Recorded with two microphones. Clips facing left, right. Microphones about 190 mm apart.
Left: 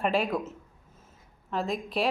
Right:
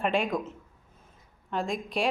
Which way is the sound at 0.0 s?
5° left (ahead or behind).